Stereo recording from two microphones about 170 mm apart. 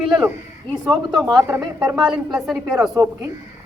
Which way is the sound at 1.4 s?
20° right (ahead or behind).